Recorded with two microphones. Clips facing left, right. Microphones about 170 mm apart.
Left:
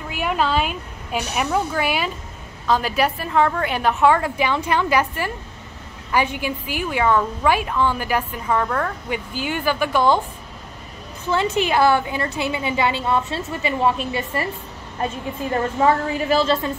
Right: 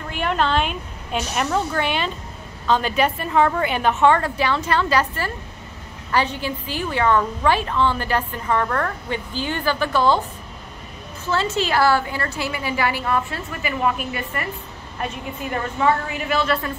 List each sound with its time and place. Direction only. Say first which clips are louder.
0.1 s a woman's voice: even; 5° left (ahead or behind)
11.2 s a woman's voice: left 2 dB; 15° left (ahead or behind)
15.5 s a woman's voice: left 2 dB; 30° left (ahead or behind)